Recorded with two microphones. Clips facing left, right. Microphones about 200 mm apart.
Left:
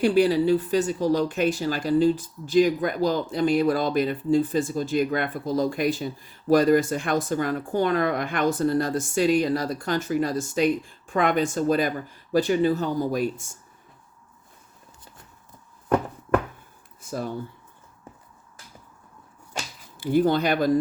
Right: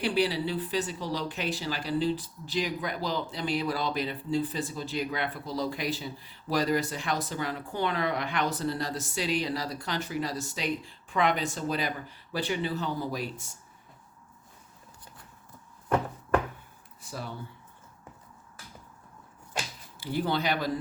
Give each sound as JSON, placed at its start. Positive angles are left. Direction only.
{"t": 0.0, "sound": "speech", "side_deg": 45}
{"t": 17.0, "sound": "speech", "side_deg": 45}
{"t": 20.0, "sound": "speech", "side_deg": 50}